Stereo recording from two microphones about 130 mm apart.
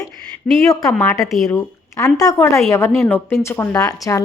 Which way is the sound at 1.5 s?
25° left (ahead or behind).